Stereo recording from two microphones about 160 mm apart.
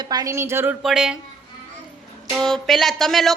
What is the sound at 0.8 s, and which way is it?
Speech, 5° right (ahead or behind).